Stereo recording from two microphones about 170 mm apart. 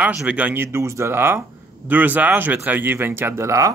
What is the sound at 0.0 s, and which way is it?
Speech, 5° right (ahead or behind).